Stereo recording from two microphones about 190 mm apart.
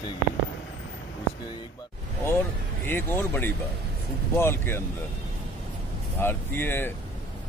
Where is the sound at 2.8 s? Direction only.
10° left (ahead or behind).